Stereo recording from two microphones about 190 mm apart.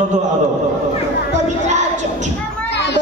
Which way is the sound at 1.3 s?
40° right (ahead or behind).